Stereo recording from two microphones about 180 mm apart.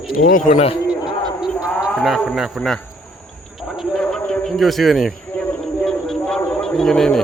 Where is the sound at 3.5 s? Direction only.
Centre (ahead or behind).